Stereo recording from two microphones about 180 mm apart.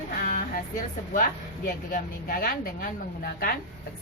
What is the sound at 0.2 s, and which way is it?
Music, 55° left (ahead or behind).